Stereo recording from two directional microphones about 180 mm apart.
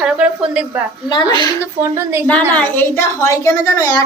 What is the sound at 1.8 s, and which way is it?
Speech, 15° right (ahead or behind).